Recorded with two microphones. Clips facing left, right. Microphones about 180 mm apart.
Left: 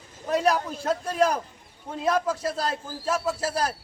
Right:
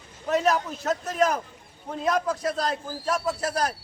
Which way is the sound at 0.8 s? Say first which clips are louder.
Left 1 dB; 30° left (ahead or behind).